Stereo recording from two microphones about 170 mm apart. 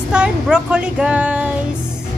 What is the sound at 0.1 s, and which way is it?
Speech, 5° right (ahead or behind).